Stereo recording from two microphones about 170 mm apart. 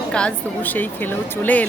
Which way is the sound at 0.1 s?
5° left (ahead or behind).